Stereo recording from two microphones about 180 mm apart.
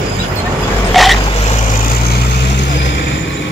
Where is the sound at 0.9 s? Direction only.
Centre (ahead or behind).